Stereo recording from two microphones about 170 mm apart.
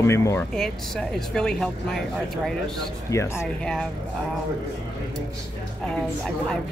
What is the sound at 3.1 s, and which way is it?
Speech, 15° left (ahead or behind).